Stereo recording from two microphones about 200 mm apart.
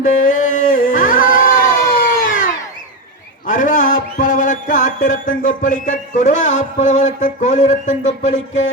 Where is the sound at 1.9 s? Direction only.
40° left (ahead or behind).